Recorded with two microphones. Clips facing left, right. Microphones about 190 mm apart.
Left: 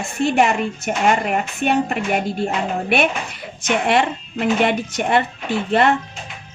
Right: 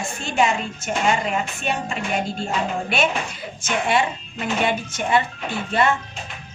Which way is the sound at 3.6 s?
60° left (ahead or behind).